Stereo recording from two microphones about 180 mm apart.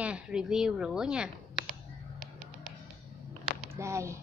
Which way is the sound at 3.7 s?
15° right (ahead or behind).